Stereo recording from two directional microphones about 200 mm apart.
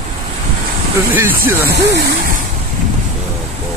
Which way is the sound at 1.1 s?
10° right (ahead or behind).